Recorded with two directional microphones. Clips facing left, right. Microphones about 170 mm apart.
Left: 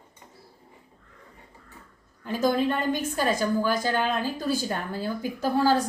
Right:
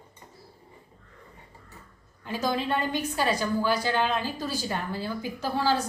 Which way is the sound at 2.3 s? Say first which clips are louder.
Left 4 dB; 45° left (ahead or behind).